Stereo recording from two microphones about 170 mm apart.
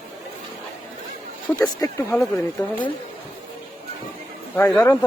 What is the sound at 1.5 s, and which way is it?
Speech, 20° left (ahead or behind).